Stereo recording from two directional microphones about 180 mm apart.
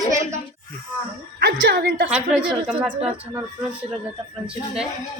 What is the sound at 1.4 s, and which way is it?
Speech, 65° right (ahead or behind).